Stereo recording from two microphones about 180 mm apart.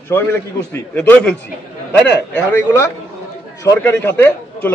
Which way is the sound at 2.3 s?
15° left (ahead or behind).